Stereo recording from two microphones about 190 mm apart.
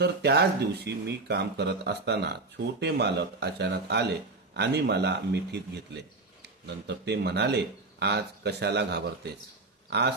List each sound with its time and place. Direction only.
0.0 s a man's voice: 60° right (ahead or behind)
6.6 s a man's voice: 60° right (ahead or behind)